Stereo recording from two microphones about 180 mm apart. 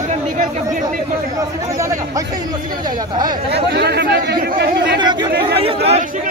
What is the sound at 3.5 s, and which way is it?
Speech, 65° right (ahead or behind).